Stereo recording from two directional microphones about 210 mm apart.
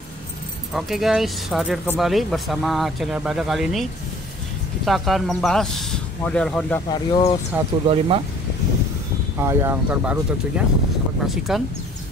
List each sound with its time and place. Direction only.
0.7 s speech: centre (ahead or behind)
4.8 s speech: centre (ahead or behind)
6.9 s speech: 20° left (ahead or behind)
7.8 s speech: 25° right (ahead or behind)
9.4 s speech: 10° right (ahead or behind)
11.2 s speech: centre (ahead or behind)